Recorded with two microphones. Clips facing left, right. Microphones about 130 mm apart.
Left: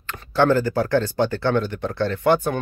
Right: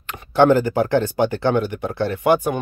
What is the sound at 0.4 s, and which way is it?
Speech, 15° right (ahead or behind).